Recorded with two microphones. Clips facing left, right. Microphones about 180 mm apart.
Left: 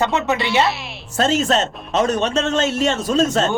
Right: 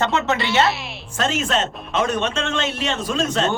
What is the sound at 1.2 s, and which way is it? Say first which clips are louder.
Speech: left 4 dB; 40° left (ahead or behind).